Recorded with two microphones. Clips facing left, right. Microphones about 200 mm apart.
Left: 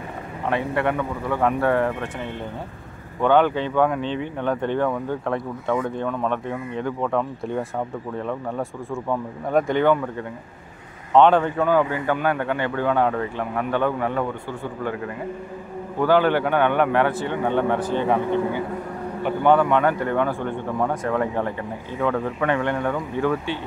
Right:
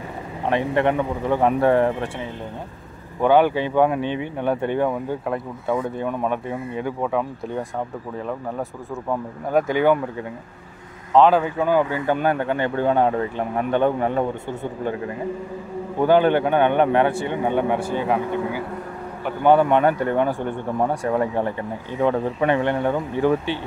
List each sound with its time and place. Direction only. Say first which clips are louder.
0.5 s speech: right 3 dB; 20° right (ahead or behind)
3.2 s speech: right 1 dB; 10° right (ahead or behind)
11.1 s speech: even; 5° right (ahead or behind)
11.7 s speech: right 2 dB; 25° right (ahead or behind)
16.0 s speech: right 2 dB; 20° right (ahead or behind)
19.4 s speech: right 2 dB; 15° right (ahead or behind)